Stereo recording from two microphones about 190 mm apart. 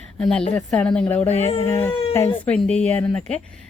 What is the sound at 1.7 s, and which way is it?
A woman's voice, 10° left (ahead or behind).